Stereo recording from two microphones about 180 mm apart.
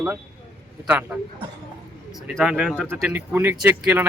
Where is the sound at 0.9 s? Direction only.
10° right (ahead or behind).